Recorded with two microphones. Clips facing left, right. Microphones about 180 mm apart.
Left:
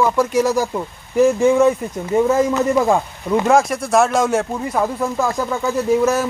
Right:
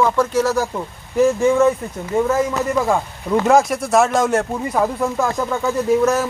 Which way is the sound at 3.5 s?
Centre (ahead or behind).